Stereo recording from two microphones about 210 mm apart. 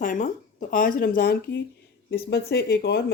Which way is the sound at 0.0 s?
40° left (ahead or behind).